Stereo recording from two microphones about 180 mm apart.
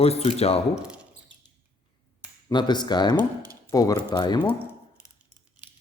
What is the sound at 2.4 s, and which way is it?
Speech, 25° left (ahead or behind).